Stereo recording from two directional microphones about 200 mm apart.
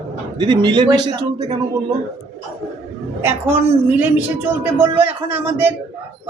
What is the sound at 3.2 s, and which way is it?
A woman's voice, 10° right (ahead or behind).